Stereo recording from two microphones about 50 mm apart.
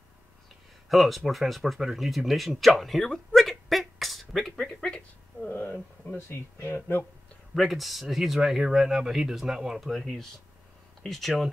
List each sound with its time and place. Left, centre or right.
0.8 s speech: centre
3.1 s a sound: centre
4.8 s speech: centre
5.5 s speech: left
7.5 s speech: centre